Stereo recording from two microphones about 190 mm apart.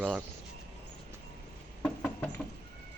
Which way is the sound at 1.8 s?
5° left (ahead or behind).